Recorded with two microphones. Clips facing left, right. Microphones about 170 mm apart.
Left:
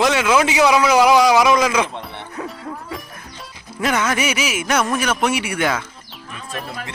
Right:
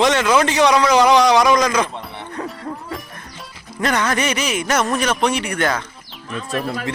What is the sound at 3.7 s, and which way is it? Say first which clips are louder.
A man's voice: even; 5° left (ahead or behind).